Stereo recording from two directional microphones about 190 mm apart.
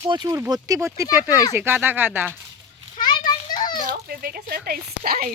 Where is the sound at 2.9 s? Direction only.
25° left (ahead or behind).